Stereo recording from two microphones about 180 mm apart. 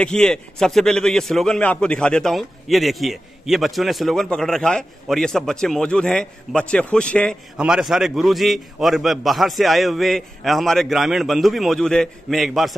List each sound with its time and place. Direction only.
0.0 s a man's voice: 5° left (ahead or behind)